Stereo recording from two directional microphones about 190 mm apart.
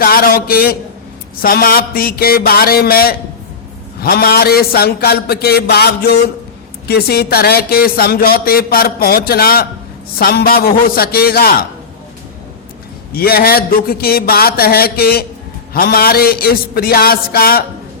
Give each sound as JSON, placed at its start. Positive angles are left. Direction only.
{"t": 0.0, "sound": "a man's voice", "side_deg": 50}
{"t": 13.1, "sound": "speech", "side_deg": 50}